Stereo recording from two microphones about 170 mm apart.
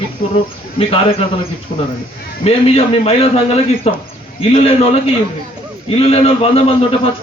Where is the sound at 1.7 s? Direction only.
45° left (ahead or behind).